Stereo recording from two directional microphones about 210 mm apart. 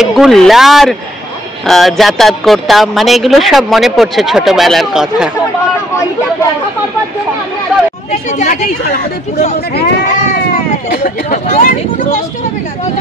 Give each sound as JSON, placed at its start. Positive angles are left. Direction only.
{"t": 0.0, "sound": "speech", "side_deg": 0}
{"t": 8.1, "sound": "speech", "side_deg": 35}